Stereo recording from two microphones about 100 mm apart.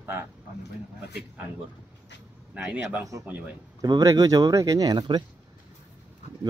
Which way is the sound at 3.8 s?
40° right (ahead or behind).